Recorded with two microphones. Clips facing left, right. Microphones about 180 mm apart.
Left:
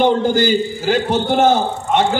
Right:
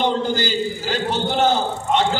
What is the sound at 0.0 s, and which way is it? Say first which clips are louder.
A man's voice: left 6 dB; 50° left (ahead or behind).